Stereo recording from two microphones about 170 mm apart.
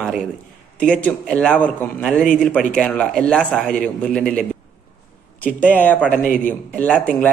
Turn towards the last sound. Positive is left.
turn(degrees=10)  # may be behind; listen again after turning